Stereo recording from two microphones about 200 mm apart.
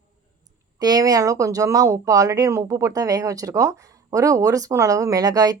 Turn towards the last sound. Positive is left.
turn(degrees=-20)  # may be behind; listen again after turning